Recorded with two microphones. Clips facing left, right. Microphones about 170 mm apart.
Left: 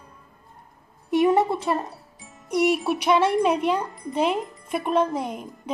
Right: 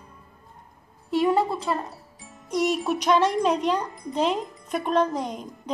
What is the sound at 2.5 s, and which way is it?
A child's voice, 10° left (ahead or behind).